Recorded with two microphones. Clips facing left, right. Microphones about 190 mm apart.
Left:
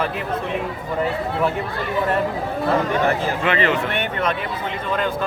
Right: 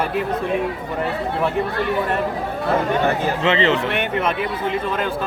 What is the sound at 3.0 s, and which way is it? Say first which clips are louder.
Speech: right 1 dB; 20° right (ahead or behind).